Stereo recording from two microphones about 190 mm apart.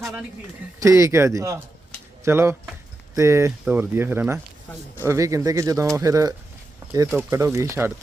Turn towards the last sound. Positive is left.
turn(degrees=-15)  # may be behind; listen again after turning